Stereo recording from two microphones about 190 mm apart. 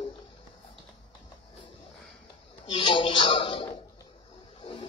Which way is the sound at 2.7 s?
25° left (ahead or behind).